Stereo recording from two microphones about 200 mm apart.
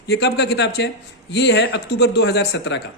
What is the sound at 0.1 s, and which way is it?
Speech, 55° left (ahead or behind).